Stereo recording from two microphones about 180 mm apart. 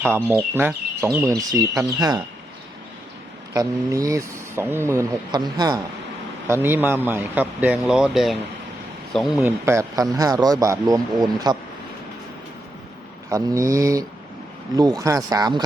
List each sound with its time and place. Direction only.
0.0 s speech: 10° right (ahead or behind)
3.5 s speech: 20° right (ahead or behind)
6.5 s speech: 10° right (ahead or behind)
9.4 s speech: 15° right (ahead or behind)
13.3 s speech: 15° right (ahead or behind)